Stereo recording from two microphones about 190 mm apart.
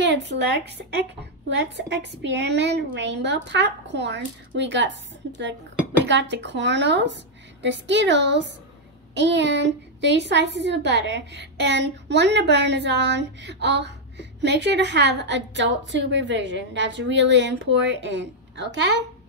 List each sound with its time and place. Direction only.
0.0 s a woman's voice: 65° right (ahead or behind)
6.0 s a woman's voice: 70° right (ahead or behind)